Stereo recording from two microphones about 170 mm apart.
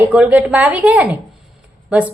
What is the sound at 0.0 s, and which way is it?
A woman's voice, 10° right (ahead or behind).